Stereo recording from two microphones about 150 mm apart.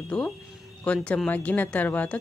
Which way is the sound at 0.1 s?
5° left (ahead or behind).